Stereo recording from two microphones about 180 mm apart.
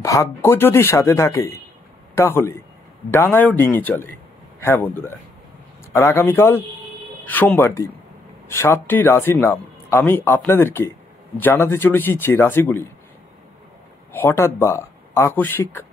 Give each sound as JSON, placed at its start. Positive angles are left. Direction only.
{"t": 0.0, "sound": "speech", "side_deg": 15}
{"t": 14.1, "sound": "speech", "side_deg": 15}